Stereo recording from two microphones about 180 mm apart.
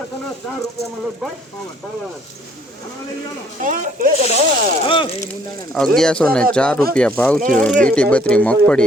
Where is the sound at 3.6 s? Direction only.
45° right (ahead or behind).